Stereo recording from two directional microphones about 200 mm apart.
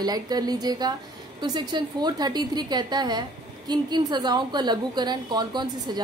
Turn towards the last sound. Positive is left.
turn(degrees=-20)  # may be behind; listen again after turning